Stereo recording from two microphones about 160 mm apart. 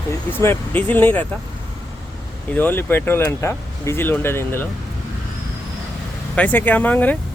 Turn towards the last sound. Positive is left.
turn(degrees=10)  # may be behind; listen again after turning